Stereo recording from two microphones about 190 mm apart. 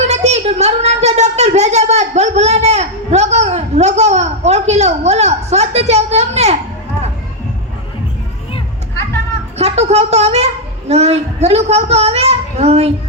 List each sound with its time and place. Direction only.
0.1 s a woman's voice: 35° right (ahead or behind)
9.6 s a woman's voice: 35° right (ahead or behind)